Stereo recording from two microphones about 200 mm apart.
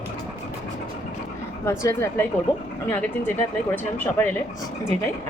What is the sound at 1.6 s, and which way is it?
Speech, 15° left (ahead or behind).